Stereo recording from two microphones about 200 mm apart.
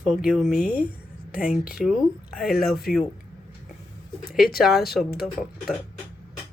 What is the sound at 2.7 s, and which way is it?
Speech, 50° left (ahead or behind).